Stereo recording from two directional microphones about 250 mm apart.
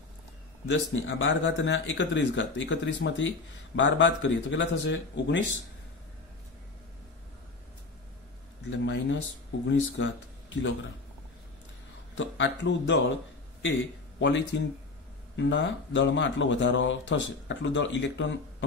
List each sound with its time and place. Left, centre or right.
0.7 s speech: left
8.6 s speech: left
12.2 s speech: left
14.2 s speech: left